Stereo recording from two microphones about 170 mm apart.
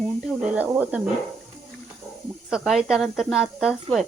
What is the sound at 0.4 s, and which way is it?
Speech, 10° right (ahead or behind).